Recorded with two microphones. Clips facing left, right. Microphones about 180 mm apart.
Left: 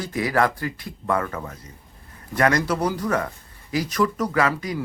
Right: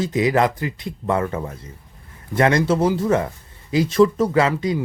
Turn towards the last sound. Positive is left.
turn(degrees=-25)  # may be behind; listen again after turning